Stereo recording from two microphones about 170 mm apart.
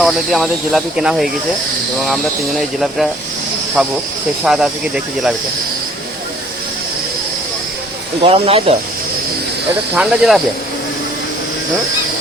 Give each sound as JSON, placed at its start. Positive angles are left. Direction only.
{"t": 0.0, "sound": "speech", "side_deg": 0}
{"t": 2.6, "sound": "speech", "side_deg": 0}
{"t": 8.2, "sound": "speech", "side_deg": -35}
{"t": 9.9, "sound": "speech", "side_deg": 0}